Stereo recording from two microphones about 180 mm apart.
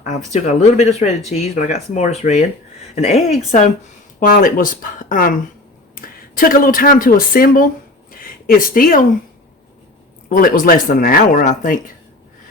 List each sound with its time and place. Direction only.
0.0 s speech: 40° left (ahead or behind)
4.3 s speech: 50° left (ahead or behind)
10.2 s speech: 50° left (ahead or behind)